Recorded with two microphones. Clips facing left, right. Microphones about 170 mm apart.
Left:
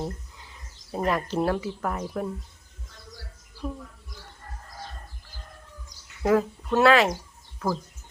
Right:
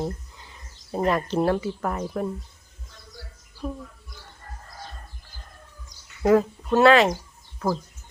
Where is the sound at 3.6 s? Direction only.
10° right (ahead or behind).